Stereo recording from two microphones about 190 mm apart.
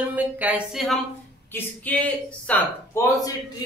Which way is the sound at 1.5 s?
10° left (ahead or behind).